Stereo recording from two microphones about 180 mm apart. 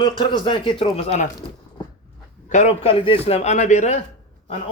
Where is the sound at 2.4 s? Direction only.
40° left (ahead or behind).